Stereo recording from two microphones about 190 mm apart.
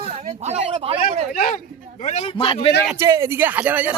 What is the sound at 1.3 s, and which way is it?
A man's voice, 45° left (ahead or behind).